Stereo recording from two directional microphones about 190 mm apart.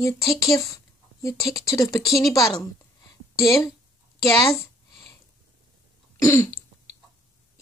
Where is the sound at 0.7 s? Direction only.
15° left (ahead or behind).